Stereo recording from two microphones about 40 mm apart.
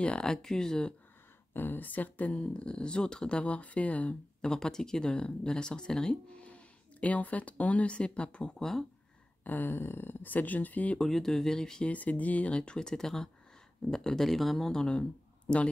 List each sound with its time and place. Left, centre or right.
0.0 s speech: left
1.5 s speech: left
2.3 s speech: left
4.4 s speech: centre
6.4 s speech: left
9.4 s a sound: left
9.8 s speech: left
11.0 s speech: centre
11.9 s speech: left
12.4 s speech: left
12.7 s speech: centre
14.7 s speech: centre
15.0 s speech: left